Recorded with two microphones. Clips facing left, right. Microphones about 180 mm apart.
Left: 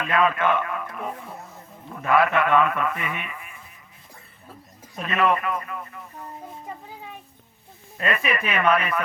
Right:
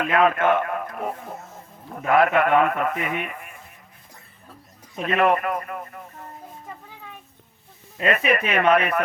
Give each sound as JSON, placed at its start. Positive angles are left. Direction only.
{"t": 0.0, "sound": "a man's voice", "side_deg": -50}
{"t": 5.0, "sound": "a man's voice", "side_deg": -50}
{"t": 8.3, "sound": "speech", "side_deg": -45}
{"t": 8.8, "sound": "speech", "side_deg": -60}